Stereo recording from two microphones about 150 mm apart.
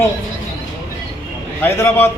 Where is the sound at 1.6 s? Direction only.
15° left (ahead or behind).